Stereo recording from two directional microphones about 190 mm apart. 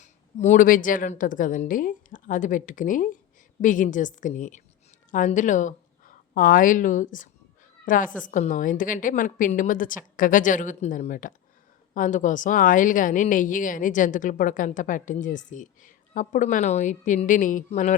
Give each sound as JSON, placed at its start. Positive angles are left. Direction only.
{"t": 0.0, "sound": "a woman's voice", "side_deg": 40}